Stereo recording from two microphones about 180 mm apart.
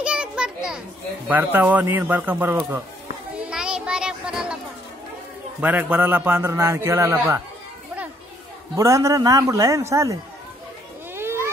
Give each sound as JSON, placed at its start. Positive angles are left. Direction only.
{"t": 0.0, "sound": "children playing", "side_deg": -5}
{"t": 1.3, "sound": "a man's voice", "side_deg": -10}
{"t": 3.4, "sound": "music", "side_deg": -5}
{"t": 5.6, "sound": "a man's voice", "side_deg": -10}
{"t": 8.7, "sound": "a man's voice", "side_deg": -15}
{"t": 11.1, "sound": "a sound", "side_deg": -15}